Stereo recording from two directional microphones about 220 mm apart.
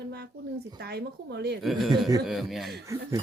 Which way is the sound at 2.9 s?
15° right (ahead or behind).